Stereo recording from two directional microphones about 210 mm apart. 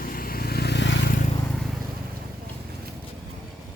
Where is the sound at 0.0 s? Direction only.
45° left (ahead or behind).